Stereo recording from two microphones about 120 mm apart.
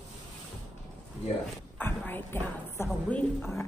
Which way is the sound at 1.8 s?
15° left (ahead or behind).